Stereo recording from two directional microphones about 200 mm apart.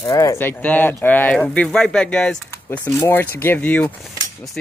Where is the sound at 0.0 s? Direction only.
15° left (ahead or behind).